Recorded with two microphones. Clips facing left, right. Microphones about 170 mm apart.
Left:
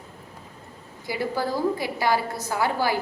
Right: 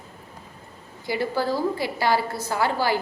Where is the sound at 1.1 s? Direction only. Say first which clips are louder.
Right 2 dB; 20° left (ahead or behind).